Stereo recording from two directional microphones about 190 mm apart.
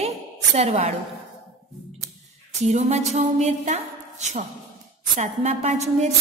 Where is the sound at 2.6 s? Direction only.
35° right (ahead or behind).